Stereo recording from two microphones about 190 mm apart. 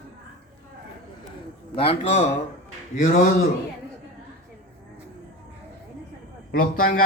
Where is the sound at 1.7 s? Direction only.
30° left (ahead or behind).